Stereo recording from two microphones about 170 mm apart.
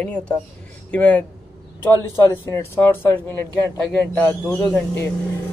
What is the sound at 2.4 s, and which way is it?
Speech, 15° left (ahead or behind).